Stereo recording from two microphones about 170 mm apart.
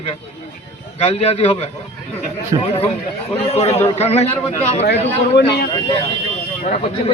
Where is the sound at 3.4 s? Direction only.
40° left (ahead or behind).